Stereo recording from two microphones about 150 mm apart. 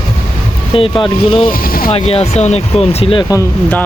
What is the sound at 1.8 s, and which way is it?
Speech, 40° left (ahead or behind).